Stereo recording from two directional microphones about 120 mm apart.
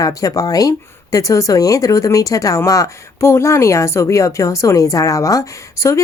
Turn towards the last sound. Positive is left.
turn(degrees=25)  # may be behind; listen again after turning